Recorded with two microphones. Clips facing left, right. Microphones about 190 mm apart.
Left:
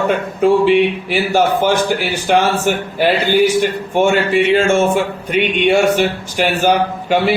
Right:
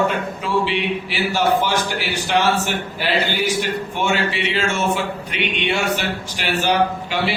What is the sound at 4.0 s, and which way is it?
A man's voice, 45° left (ahead or behind).